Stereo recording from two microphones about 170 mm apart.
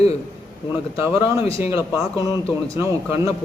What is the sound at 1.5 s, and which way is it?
Speech, 15° right (ahead or behind).